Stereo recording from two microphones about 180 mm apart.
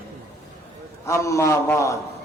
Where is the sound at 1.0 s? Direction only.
15° left (ahead or behind).